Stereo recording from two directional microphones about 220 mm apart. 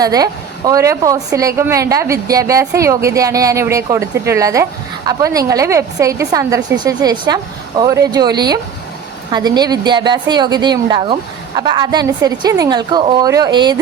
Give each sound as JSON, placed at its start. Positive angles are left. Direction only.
{"t": 0.0, "sound": "a woman's voice", "side_deg": -15}